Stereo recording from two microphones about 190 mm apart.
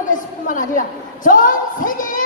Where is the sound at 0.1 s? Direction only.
45° left (ahead or behind).